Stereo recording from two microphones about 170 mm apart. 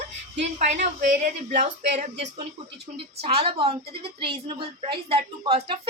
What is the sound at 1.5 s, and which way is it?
Speech, 45° right (ahead or behind).